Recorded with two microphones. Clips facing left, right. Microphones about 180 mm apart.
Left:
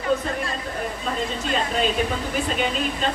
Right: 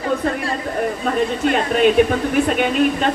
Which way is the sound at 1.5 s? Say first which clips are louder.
Right 8 dB; 60° right (ahead or behind).